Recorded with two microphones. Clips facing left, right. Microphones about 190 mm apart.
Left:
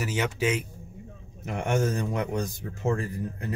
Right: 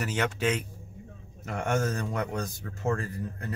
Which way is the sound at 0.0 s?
5° left (ahead or behind).